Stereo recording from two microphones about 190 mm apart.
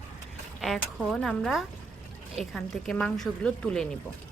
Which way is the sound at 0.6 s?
Centre (ahead or behind).